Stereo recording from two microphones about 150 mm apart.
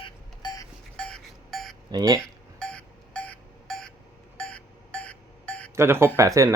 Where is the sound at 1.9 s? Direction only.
25° right (ahead or behind).